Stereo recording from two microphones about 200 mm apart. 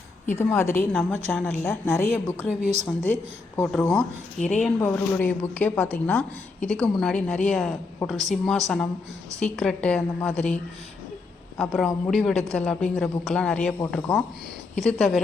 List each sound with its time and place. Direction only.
0.3 s a woman's voice: 10° left (ahead or behind)
2.6 s a woman's voice: 35° right (ahead or behind)
2.8 s a woman's voice: 10° left (ahead or behind)
11.5 s a woman's voice: centre (ahead or behind)
14.8 s a woman's voice: centre (ahead or behind)